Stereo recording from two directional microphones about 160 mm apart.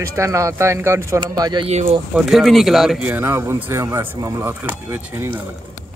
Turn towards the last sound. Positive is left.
turn(degrees=-15)  # may be behind; listen again after turning